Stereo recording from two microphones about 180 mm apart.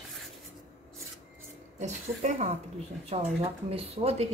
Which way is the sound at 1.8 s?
40° right (ahead or behind).